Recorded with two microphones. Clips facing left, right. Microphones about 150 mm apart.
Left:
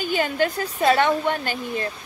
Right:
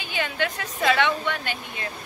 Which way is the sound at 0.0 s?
40° left (ahead or behind).